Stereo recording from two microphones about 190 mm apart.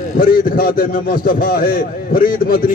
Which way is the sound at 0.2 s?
50° left (ahead or behind).